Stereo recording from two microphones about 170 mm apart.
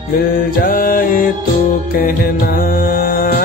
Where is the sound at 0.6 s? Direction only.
55° left (ahead or behind).